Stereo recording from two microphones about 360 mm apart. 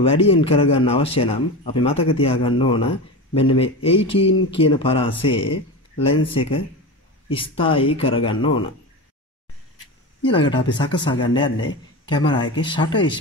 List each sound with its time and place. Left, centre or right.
0.0 s a man's voice: centre
10.2 s a man's voice: centre
12.5 s a man's voice: centre